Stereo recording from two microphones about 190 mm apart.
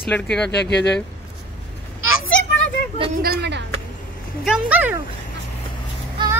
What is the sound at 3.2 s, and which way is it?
Speech, 60° right (ahead or behind).